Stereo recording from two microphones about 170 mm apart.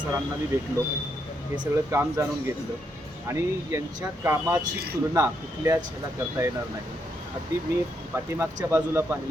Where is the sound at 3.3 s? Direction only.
15° right (ahead or behind).